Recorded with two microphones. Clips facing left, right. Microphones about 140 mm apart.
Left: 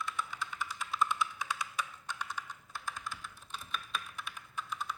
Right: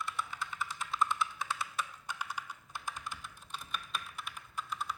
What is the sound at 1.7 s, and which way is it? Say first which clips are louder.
Computer keyboard: even; 10° right (ahead or behind).